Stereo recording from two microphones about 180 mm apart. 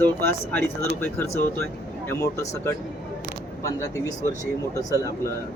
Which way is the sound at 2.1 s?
15° left (ahead or behind).